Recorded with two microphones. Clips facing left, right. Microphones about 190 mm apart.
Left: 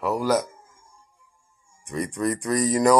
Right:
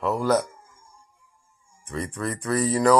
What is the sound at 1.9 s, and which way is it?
Speech, 15° left (ahead or behind).